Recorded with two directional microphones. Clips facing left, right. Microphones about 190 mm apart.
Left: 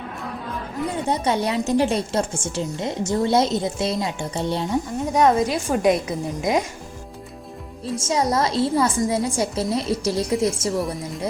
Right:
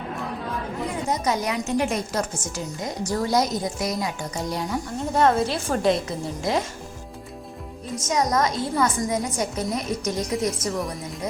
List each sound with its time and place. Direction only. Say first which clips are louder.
0.9 s a woman's voice: left 3 dB; 30° left (ahead or behind)
5.4 s a woman's voice: left 3 dB; 15° left (ahead or behind)
7.9 s a woman's voice: left 1 dB; 30° left (ahead or behind)